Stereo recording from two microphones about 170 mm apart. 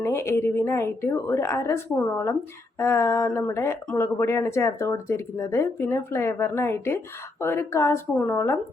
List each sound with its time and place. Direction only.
0.0 s speech: 15° left (ahead or behind)